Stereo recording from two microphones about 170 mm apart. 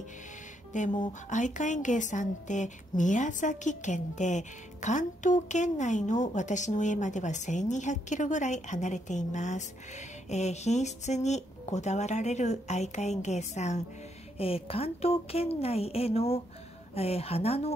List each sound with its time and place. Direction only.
0.7 s a woman's voice: 50° left (ahead or behind)